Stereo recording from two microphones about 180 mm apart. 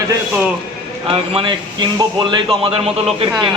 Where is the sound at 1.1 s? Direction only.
30° right (ahead or behind).